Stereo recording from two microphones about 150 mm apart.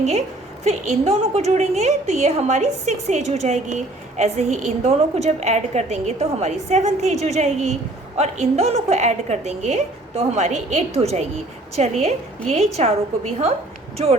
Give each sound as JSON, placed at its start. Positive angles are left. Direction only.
{"t": 0.0, "sound": "a woman's voice", "side_deg": -50}